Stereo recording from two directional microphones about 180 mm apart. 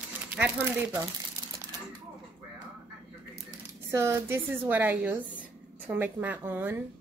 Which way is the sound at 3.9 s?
15° right (ahead or behind).